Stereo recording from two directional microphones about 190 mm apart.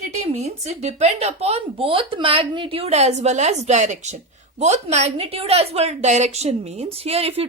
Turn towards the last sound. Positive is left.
turn(degrees=-30)  # may be behind; listen again after turning